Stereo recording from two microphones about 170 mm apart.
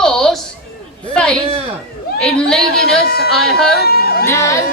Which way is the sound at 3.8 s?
65° left (ahead or behind).